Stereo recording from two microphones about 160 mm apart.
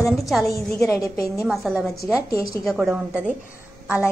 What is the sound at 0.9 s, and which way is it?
Speech, 20° left (ahead or behind).